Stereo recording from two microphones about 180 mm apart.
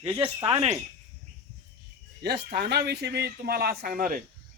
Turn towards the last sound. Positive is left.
turn(degrees=-50)  # may be behind; listen again after turning